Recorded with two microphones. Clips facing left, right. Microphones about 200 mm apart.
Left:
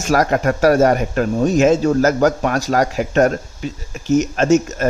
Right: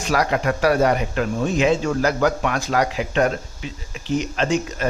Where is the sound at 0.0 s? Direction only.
45° left (ahead or behind).